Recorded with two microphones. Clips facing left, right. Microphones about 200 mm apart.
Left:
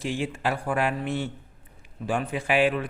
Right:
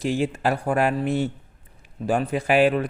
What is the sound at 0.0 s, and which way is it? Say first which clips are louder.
Speech: right 5 dB; 40° right (ahead or behind).